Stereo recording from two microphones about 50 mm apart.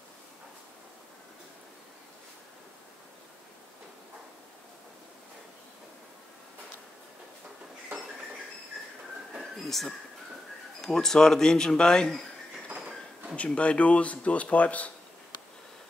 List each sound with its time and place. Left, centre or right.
9.4 s a sound: centre
10.8 s a man's voice: centre
13.6 s speech: left